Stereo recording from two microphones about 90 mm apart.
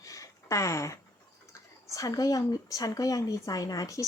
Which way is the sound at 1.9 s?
40° left (ahead or behind).